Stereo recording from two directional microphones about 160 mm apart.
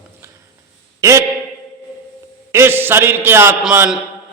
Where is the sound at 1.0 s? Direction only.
20° right (ahead or behind).